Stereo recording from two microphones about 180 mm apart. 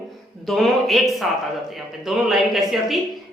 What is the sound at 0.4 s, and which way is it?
A man's voice, centre (ahead or behind).